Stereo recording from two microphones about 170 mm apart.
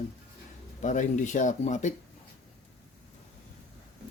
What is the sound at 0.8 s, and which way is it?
Speech, 45° left (ahead or behind).